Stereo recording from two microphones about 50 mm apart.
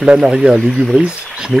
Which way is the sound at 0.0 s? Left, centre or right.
Centre.